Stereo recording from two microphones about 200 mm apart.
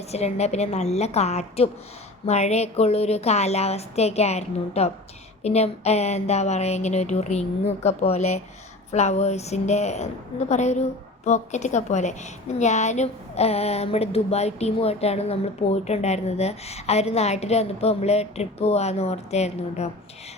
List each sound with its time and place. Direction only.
0.1 s speech: 30° left (ahead or behind)